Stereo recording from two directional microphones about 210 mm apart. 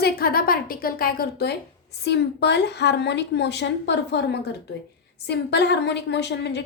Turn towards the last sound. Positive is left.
turn(degrees=55)  # may be behind; listen again after turning